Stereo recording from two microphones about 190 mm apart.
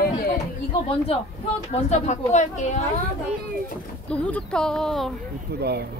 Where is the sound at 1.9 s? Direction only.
40° left (ahead or behind).